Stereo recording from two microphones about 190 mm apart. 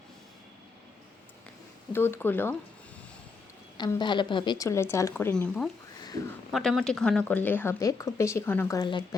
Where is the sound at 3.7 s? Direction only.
25° left (ahead or behind).